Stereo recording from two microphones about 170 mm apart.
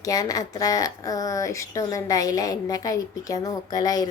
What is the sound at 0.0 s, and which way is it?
A woman's voice, 20° left (ahead or behind).